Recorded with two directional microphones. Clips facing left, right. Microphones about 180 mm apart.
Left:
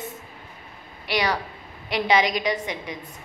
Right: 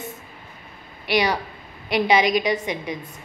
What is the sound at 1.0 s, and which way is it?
A woman's voice, 15° right (ahead or behind).